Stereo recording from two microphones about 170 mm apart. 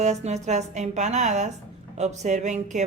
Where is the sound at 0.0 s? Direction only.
40° right (ahead or behind).